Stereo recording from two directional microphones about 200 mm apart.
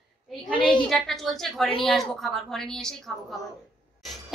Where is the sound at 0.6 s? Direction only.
25° left (ahead or behind).